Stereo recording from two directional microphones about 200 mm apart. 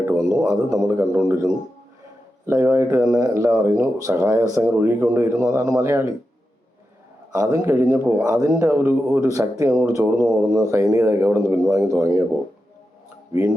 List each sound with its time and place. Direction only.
0.4 s speech: 15° right (ahead or behind)
7.3 s speech: 15° right (ahead or behind)